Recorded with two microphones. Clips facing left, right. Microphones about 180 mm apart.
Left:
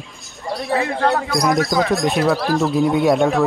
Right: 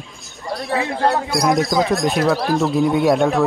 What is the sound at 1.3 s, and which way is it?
Speech, centre (ahead or behind).